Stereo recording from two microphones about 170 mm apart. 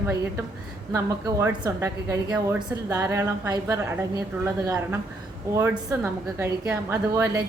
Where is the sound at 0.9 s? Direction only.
15° right (ahead or behind).